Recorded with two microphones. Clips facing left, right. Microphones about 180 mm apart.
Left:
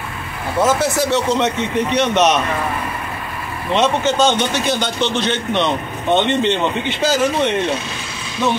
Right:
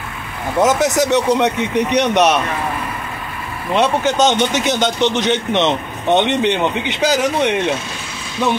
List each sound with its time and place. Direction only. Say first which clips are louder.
0.6 s a man's voice: right 2 dB; 20° right (ahead or behind)
3.7 s a man's voice: right 1 dB; 15° right (ahead or behind)